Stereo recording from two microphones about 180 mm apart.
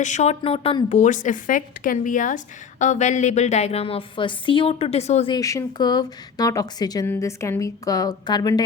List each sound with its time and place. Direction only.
0.0 s a woman's voice: 40° left (ahead or behind)
5.3 s speech: 20° left (ahead or behind)